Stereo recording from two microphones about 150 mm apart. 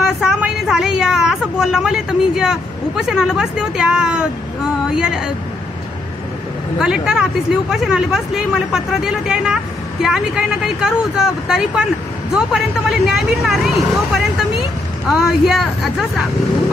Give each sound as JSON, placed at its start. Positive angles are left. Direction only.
{"t": 0.2, "sound": "a woman's voice", "side_deg": -5}
{"t": 6.8, "sound": "speech", "side_deg": -5}